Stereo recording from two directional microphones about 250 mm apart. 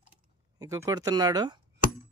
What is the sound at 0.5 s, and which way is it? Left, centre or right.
Speech, centre.